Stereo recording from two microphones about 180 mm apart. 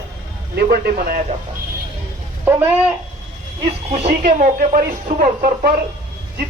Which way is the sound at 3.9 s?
40° right (ahead or behind).